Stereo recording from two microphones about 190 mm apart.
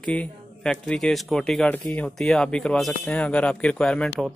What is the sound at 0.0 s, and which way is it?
Speech, 5° left (ahead or behind).